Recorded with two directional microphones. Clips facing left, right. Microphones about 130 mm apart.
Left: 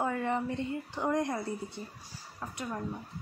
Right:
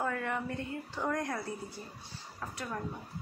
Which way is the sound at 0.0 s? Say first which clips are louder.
Left 3 dB; 25° left (ahead or behind).